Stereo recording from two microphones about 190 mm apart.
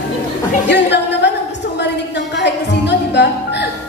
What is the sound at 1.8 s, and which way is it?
Music, 65° left (ahead or behind).